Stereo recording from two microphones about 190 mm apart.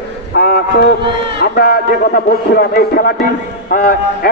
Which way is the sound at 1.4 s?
55° left (ahead or behind).